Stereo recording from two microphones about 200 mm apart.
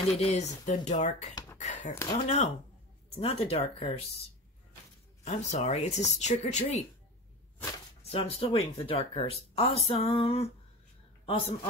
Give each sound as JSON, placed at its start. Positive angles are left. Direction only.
{"t": 0.2, "sound": "speech", "side_deg": 35}
{"t": 5.2, "sound": "speech", "side_deg": 35}
{"t": 8.1, "sound": "a woman's voice", "side_deg": 30}